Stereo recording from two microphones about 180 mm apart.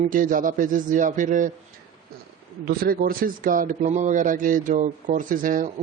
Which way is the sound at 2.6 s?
55° right (ahead or behind).